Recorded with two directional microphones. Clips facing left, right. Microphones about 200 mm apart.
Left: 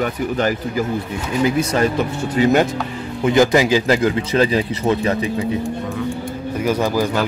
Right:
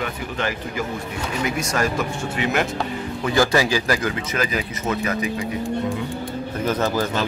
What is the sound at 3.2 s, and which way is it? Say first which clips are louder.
Speech: left 5 dB; 20° left (ahead or behind).